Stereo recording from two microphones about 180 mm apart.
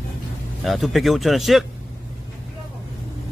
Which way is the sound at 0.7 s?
Centre (ahead or behind).